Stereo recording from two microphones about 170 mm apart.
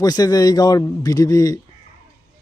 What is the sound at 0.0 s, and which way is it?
A man's voice, 20° left (ahead or behind).